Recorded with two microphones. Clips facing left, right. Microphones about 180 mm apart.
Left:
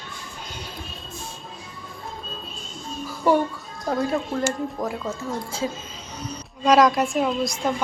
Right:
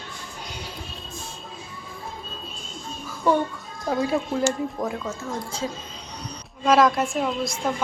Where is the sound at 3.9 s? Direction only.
5° right (ahead or behind).